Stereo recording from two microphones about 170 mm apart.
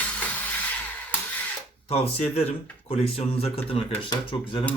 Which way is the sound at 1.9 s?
35° left (ahead or behind).